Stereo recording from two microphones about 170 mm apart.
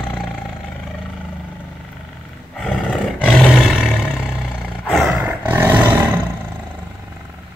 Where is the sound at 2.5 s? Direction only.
Centre (ahead or behind).